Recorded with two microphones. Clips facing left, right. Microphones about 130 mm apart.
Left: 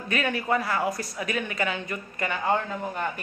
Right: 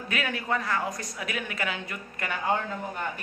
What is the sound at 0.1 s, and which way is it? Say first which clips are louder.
Speech: left 4 dB; centre (ahead or behind).